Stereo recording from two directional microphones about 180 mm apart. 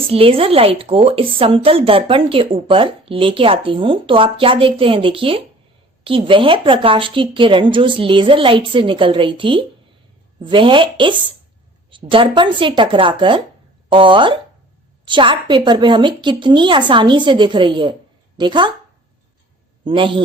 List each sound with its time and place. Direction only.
0.1 s speech: 30° right (ahead or behind)
19.8 s a man's voice: 25° right (ahead or behind)